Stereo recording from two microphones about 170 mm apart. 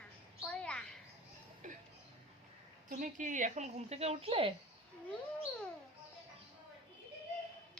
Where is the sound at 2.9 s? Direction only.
50° right (ahead or behind); by 4.5 s 35° right (ahead or behind).